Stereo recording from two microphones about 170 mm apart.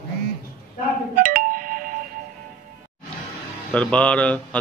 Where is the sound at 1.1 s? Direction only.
55° right (ahead or behind).